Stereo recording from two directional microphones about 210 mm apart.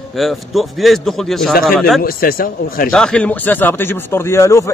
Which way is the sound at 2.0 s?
45° left (ahead or behind).